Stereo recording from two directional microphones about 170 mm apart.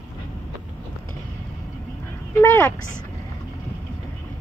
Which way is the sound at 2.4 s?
15° left (ahead or behind).